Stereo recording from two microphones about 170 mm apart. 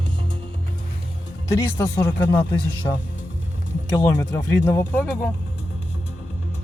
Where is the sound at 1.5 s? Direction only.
15° left (ahead or behind).